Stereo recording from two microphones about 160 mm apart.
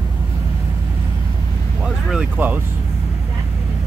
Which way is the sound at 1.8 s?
5° right (ahead or behind).